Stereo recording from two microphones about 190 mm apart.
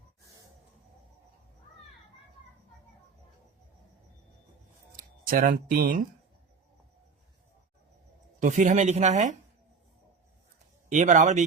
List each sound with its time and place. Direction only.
4.9 s speech: 45° right (ahead or behind)
8.4 s speech: 40° right (ahead or behind)
10.9 s speech: 40° right (ahead or behind)